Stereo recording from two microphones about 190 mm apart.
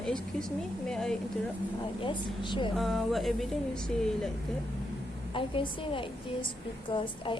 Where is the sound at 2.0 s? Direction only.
25° left (ahead or behind).